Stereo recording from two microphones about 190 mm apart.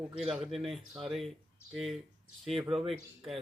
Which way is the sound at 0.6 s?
Centre (ahead or behind).